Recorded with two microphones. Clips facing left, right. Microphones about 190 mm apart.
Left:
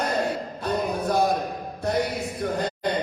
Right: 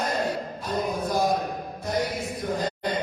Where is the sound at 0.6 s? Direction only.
65° left (ahead or behind).